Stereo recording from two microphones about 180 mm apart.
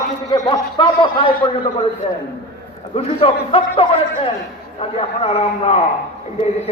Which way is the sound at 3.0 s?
30° left (ahead or behind).